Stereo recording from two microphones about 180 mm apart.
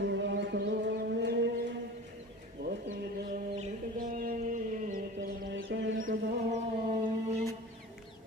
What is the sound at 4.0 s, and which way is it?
Mantra, 50° right (ahead or behind).